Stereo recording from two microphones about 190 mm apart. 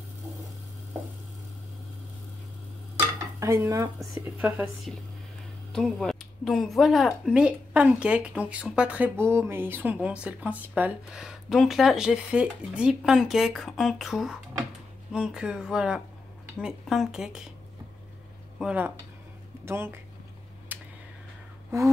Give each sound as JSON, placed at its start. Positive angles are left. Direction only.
{"t": 3.3, "sound": "dishes", "side_deg": -15}
{"t": 4.2, "sound": "speech", "side_deg": -10}
{"t": 5.7, "sound": "speech", "side_deg": 5}
{"t": 18.6, "sound": "speech", "side_deg": -5}
{"t": 20.7, "sound": "a sound", "side_deg": -10}